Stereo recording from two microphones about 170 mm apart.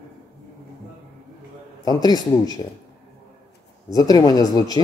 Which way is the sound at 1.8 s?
25° left (ahead or behind).